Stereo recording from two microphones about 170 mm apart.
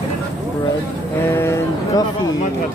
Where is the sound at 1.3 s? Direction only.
15° left (ahead or behind).